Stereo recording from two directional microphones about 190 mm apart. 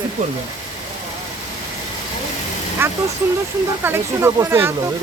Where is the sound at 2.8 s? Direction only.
10° right (ahead or behind).